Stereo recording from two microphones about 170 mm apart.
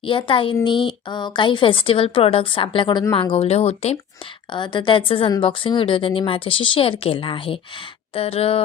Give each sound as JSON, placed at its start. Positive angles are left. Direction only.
{"t": 0.0, "sound": "a woman's voice", "side_deg": 30}
{"t": 4.5, "sound": "a woman's voice", "side_deg": 25}